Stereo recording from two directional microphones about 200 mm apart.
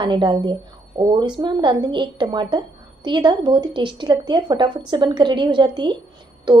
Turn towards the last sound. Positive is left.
turn(degrees=-20)  # may be behind; listen again after turning